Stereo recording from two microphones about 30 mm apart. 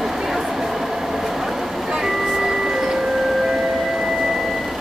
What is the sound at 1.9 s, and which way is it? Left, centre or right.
Music, centre.